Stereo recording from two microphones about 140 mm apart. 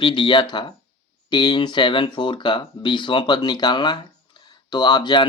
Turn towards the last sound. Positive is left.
turn(degrees=30)  # may be behind; listen again after turning